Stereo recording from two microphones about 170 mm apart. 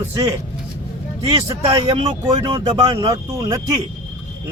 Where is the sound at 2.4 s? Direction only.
30° right (ahead or behind).